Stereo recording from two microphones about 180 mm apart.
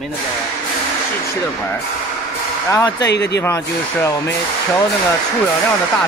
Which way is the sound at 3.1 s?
70° left (ahead or behind).